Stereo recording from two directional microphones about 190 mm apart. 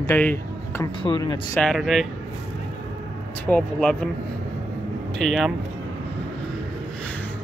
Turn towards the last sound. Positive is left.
turn(degrees=0)  # may be behind; listen again after turning